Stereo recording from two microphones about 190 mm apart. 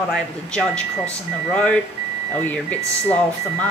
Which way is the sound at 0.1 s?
5° left (ahead or behind).